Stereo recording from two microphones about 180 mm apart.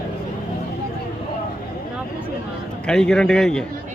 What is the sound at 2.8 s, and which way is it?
Speech, 5° left (ahead or behind).